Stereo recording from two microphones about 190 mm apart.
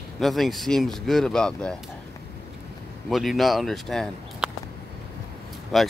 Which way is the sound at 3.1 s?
Centre (ahead or behind).